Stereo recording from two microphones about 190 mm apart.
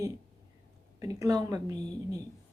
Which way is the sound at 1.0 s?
15° right (ahead or behind).